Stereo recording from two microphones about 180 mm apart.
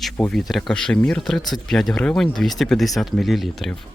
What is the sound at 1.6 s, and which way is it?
Speech, centre (ahead or behind).